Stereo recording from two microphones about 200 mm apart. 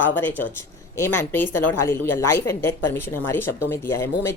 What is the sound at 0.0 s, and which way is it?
A woman's voice, 10° left (ahead or behind).